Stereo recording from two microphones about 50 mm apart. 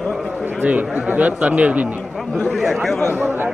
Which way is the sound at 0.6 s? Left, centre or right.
Right.